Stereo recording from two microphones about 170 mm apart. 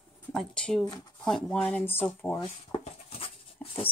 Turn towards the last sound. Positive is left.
turn(degrees=5)  # may be behind; listen again after turning